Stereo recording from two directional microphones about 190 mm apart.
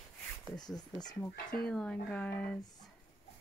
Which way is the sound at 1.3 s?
50° left (ahead or behind).